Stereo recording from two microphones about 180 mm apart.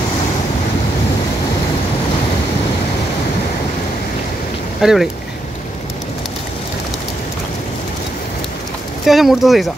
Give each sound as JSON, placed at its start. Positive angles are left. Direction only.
{"t": 4.8, "sound": "speech", "side_deg": -5}
{"t": 9.0, "sound": "speech", "side_deg": 0}